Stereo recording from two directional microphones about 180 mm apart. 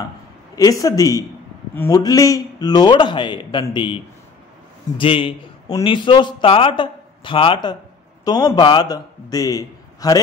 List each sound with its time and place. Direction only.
0.6 s a man's voice: 20° left (ahead or behind)